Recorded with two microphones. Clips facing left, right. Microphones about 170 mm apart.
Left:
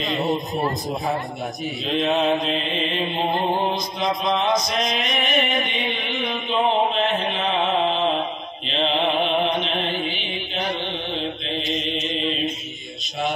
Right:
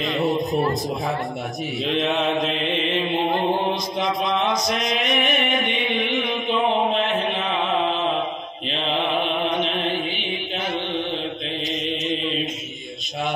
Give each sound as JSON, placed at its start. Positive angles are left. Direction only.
{"t": 1.9, "sound": "mantra", "side_deg": -70}
{"t": 4.2, "sound": "mantra", "side_deg": -60}